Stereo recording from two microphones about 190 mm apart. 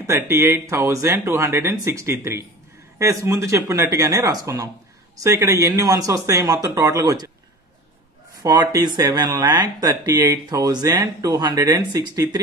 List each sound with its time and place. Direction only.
0.0 s speech: 15° right (ahead or behind)
8.4 s speech: 20° right (ahead or behind)